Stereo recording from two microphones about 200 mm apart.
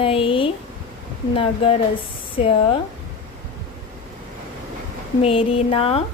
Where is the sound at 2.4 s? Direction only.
30° left (ahead or behind).